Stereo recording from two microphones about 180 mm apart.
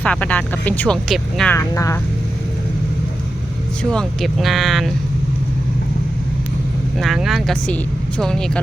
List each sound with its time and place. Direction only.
0.0 s speech: 5° left (ahead or behind)
1.5 s speech: 15° left (ahead or behind)
3.9 s speech: centre (ahead or behind)
7.0 s speech: centre (ahead or behind)